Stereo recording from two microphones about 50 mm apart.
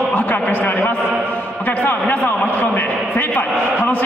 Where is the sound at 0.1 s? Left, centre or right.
Left.